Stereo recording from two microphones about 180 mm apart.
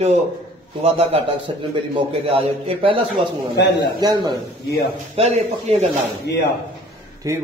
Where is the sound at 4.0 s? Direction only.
25° right (ahead or behind).